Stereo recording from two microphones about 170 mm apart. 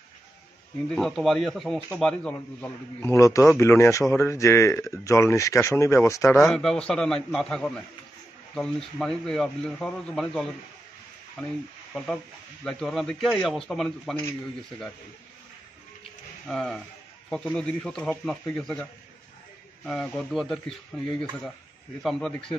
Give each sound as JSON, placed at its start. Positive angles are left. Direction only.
{"t": 0.8, "sound": "speech", "side_deg": 0}
{"t": 2.3, "sound": "a man's voice", "side_deg": 15}
{"t": 6.4, "sound": "speech", "side_deg": 0}
{"t": 12.6, "sound": "speech", "side_deg": 0}
{"t": 16.4, "sound": "speech", "side_deg": 5}